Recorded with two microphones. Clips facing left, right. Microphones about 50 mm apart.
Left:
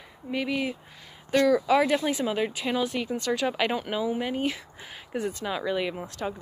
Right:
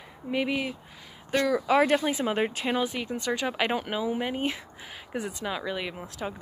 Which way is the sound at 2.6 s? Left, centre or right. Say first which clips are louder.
Left 1 dB; centre.